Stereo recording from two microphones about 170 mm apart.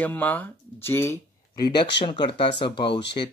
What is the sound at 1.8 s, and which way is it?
Speech, 30° left (ahead or behind).